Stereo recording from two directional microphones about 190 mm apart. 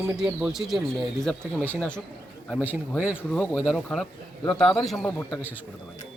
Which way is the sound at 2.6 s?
10° right (ahead or behind).